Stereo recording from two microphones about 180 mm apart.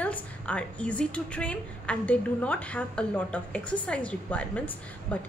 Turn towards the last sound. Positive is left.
turn(degrees=5)  # may be behind; listen again after turning